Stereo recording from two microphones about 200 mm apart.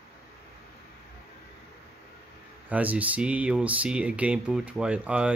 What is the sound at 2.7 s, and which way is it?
Speech, 5° right (ahead or behind).